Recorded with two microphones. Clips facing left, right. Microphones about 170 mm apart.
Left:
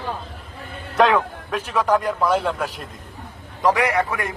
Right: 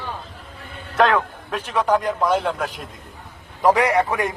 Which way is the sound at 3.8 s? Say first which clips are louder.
Right 2 dB; 30° right (ahead or behind).